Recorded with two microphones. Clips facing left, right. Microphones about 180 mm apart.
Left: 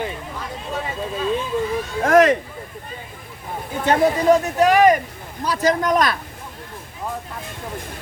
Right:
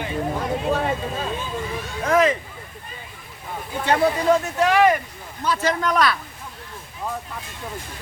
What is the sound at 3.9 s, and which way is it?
Speech, 40° left (ahead or behind).